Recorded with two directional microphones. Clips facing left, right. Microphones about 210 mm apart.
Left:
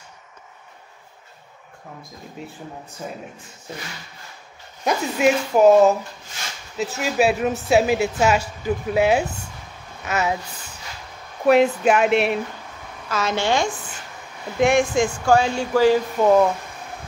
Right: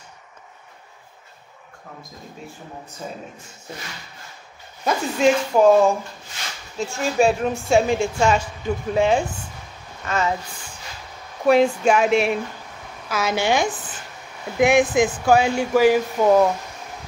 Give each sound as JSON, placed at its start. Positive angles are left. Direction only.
{"t": 4.8, "sound": "a woman's voice", "side_deg": 5}
{"t": 11.4, "sound": "a woman's voice", "side_deg": 5}
{"t": 13.1, "sound": "speech", "side_deg": -10}